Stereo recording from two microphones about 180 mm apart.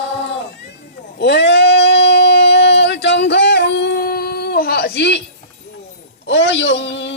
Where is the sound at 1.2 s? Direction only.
70° left (ahead or behind).